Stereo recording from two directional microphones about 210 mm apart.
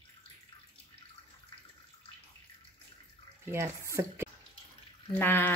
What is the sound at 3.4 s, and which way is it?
Speech, 10° right (ahead or behind).